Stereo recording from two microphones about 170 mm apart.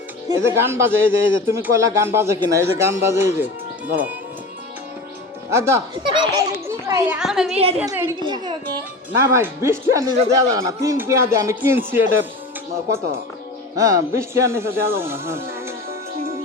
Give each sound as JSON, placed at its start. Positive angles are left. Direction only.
{"t": 0.3, "sound": "speech", "side_deg": -15}
{"t": 5.5, "sound": "a child's voice", "side_deg": -15}
{"t": 7.2, "sound": "a woman's voice", "side_deg": -5}
{"t": 7.5, "sound": "a woman's voice", "side_deg": -35}
{"t": 7.9, "sound": "speech", "side_deg": -15}
{"t": 8.2, "sound": "a child's voice", "side_deg": -25}
{"t": 9.3, "sound": "speech", "side_deg": -15}
{"t": 13.7, "sound": "speech", "side_deg": -20}